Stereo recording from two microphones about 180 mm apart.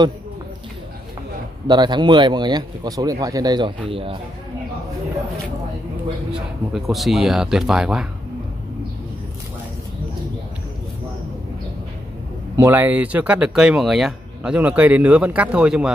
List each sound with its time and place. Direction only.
1.7 s speech: 25° right (ahead or behind)
6.7 s speech: centre (ahead or behind)
12.5 s speech: 15° right (ahead or behind)